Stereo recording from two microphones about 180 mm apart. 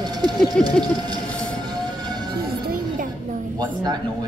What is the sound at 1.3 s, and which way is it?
Train, 5° left (ahead or behind).